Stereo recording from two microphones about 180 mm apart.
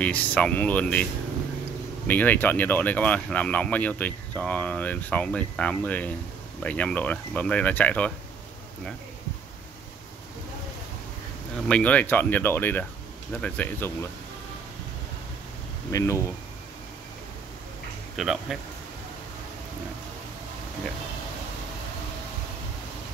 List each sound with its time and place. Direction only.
0.0 s speech: 10° left (ahead or behind)
2.0 s speech: 10° left (ahead or behind)
11.6 s speech: 5° left (ahead or behind)
15.9 s speech: 15° left (ahead or behind)
18.1 s speech: centre (ahead or behind)